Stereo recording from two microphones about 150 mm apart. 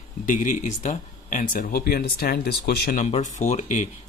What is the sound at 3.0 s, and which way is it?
Speech, 50° left (ahead or behind).